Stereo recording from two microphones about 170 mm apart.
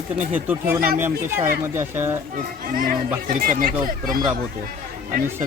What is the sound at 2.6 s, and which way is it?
A child's voice, 55° right (ahead or behind).